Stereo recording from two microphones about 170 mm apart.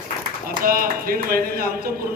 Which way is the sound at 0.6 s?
60° right (ahead or behind).